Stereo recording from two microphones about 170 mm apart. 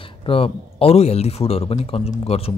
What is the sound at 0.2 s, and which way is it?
A man's voice, 35° left (ahead or behind).